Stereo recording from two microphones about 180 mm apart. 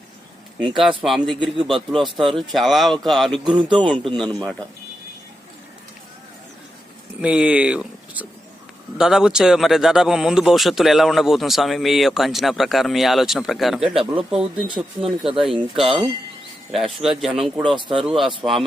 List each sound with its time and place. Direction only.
0.6 s speech: centre (ahead or behind)
3.4 s speech: 25° right (ahead or behind)
7.2 s speech: 5° right (ahead or behind)
17.0 s speech: centre (ahead or behind)